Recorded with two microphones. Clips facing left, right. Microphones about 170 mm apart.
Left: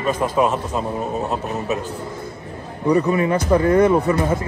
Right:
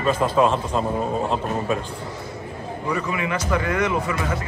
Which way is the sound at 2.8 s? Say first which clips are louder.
Left 9 dB; 35° left (ahead or behind).